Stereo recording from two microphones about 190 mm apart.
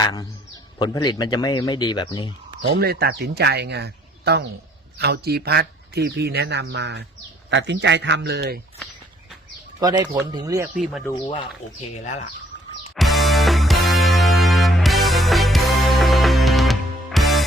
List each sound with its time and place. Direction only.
0.0 s a man's voice: 20° left (ahead or behind)
2.6 s a man's voice: 55° right (ahead or behind)
9.8 s speech: 20° right (ahead or behind)
13.0 s music: centre (ahead or behind)